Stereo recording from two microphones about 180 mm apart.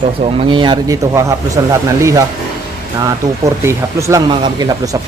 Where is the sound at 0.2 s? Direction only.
30° right (ahead or behind).